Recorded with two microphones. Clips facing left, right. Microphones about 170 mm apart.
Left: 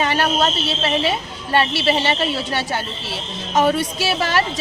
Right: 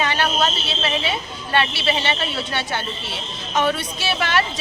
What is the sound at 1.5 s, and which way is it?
A woman's voice, 35° left (ahead or behind).